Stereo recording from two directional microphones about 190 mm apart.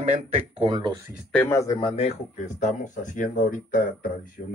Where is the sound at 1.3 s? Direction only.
10° left (ahead or behind).